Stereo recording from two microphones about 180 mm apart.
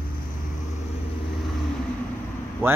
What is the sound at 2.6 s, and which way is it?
Speech, 15° right (ahead or behind).